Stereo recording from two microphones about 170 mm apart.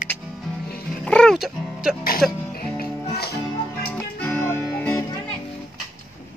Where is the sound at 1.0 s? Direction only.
5° left (ahead or behind).